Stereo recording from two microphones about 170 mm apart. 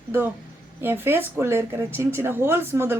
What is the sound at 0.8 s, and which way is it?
Speech, 10° right (ahead or behind).